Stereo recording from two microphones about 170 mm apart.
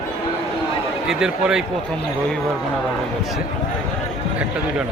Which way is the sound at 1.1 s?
5° right (ahead or behind).